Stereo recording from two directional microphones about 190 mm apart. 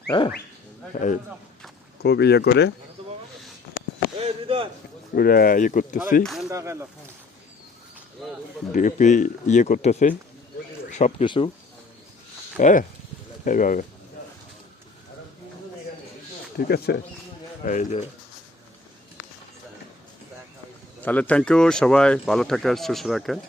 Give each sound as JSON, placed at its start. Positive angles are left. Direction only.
{"t": 2.0, "sound": "speech", "side_deg": 60}
{"t": 3.0, "sound": "a sound", "side_deg": -30}
{"t": 4.2, "sound": "a sound", "side_deg": -30}
{"t": 5.1, "sound": "speech", "side_deg": 50}
{"t": 6.2, "sound": "speech", "side_deg": 0}
{"t": 6.5, "sound": "speech", "side_deg": -15}
{"t": 8.7, "sound": "speech", "side_deg": 40}
{"t": 12.5, "sound": "speech", "side_deg": 40}
{"t": 16.6, "sound": "speech", "side_deg": 55}
{"t": 17.7, "sound": "speech", "side_deg": 40}
{"t": 21.0, "sound": "speech", "side_deg": 10}